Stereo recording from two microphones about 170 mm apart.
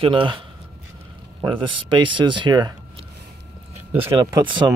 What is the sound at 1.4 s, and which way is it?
Speech, 30° right (ahead or behind).